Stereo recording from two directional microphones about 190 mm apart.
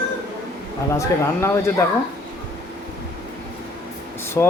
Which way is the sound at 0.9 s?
15° left (ahead or behind).